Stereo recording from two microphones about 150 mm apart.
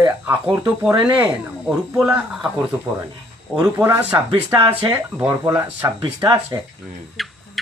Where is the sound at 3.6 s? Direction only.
15° right (ahead or behind).